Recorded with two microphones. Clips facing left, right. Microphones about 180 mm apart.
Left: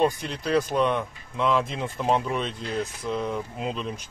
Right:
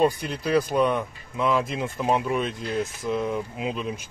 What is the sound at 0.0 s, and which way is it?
Speech, 5° right (ahead or behind).